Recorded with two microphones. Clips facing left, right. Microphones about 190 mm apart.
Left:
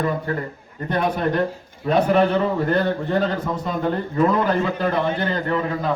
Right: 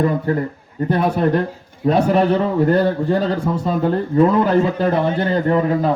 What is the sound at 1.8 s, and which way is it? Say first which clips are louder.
Speech: right 3 dB; 15° right (ahead or behind).